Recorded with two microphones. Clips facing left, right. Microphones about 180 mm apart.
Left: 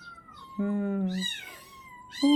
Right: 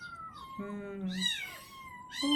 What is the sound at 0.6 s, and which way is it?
Speech, 55° left (ahead or behind).